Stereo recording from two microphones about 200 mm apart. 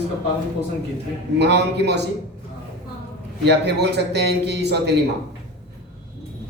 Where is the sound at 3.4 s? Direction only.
55° right (ahead or behind).